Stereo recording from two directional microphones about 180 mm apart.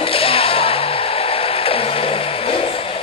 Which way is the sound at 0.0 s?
30° left (ahead or behind).